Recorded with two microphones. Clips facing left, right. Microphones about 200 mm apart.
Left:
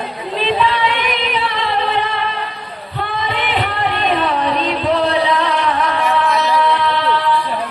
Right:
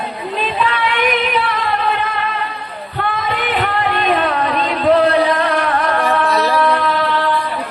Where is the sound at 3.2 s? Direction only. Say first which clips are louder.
Left 1 dB; 45° right (ahead or behind).